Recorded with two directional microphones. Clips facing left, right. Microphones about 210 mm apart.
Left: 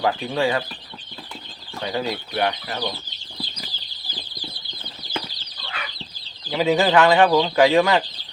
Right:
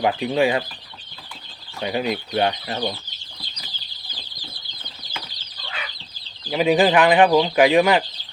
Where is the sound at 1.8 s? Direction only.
20° right (ahead or behind).